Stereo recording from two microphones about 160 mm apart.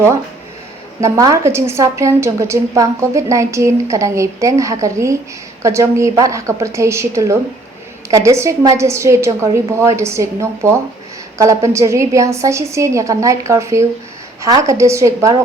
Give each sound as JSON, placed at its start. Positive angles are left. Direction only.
{"t": 1.0, "sound": "a woman's voice", "side_deg": -20}